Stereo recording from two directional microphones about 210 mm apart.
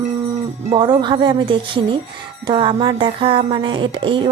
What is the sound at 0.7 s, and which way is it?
Speech, 20° right (ahead or behind).